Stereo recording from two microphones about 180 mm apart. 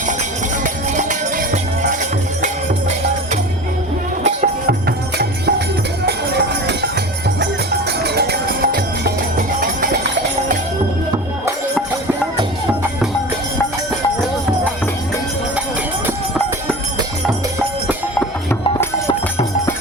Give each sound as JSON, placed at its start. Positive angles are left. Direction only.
{"t": 0.6, "sound": "music", "side_deg": -45}
{"t": 4.2, "sound": "music", "side_deg": -45}
{"t": 4.9, "sound": "music", "side_deg": -60}